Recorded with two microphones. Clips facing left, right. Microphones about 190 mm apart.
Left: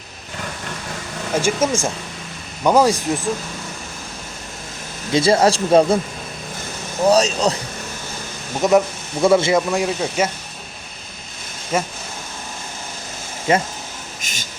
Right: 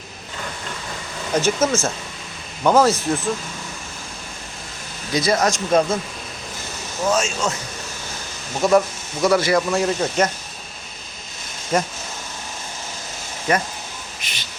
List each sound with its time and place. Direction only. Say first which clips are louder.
1.4 s speech: even; 10° left (ahead or behind)
5.1 s speech: left 4 dB; 30° left (ahead or behind)
7.0 s speech: left 6 dB; 35° left (ahead or behind)
8.6 s speech: left 1 dB; 20° left (ahead or behind)
9.6 s speech: even; 10° left (ahead or behind)
11.7 s speech: right 1 dB; 5° left (ahead or behind)
13.5 s speech: left 3 dB; 20° left (ahead or behind)
14.2 s a sound: left 2 dB; 45° left (ahead or behind)